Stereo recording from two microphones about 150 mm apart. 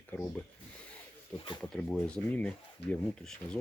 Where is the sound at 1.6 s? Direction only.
5° left (ahead or behind).